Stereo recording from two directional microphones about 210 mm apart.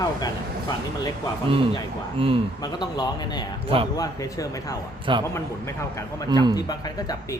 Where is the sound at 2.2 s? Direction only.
25° right (ahead or behind).